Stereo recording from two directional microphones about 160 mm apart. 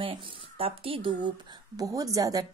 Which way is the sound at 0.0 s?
35° right (ahead or behind).